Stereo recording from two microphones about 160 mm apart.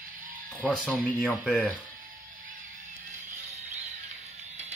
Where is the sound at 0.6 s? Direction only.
10° left (ahead or behind).